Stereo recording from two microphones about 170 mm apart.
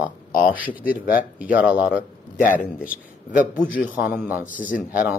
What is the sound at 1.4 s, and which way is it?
Speech, 10° right (ahead or behind).